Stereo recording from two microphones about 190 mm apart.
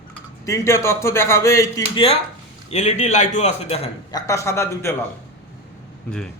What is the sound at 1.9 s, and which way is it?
A man's voice, 30° left (ahead or behind).